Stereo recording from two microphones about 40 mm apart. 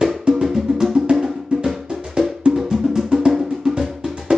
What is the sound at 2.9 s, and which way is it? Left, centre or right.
Music, centre.